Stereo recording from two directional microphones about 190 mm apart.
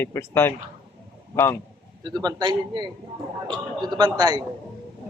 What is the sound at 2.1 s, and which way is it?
Speech, 20° right (ahead or behind).